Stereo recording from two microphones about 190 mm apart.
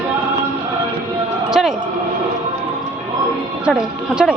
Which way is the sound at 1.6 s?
Centre (ahead or behind).